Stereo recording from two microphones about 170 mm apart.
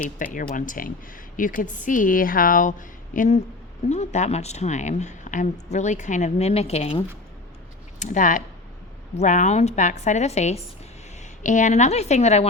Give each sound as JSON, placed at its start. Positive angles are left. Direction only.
{"t": 0.2, "sound": "a woman's voice", "side_deg": 50}